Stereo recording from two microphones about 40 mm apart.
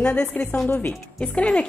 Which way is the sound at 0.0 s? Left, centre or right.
Left.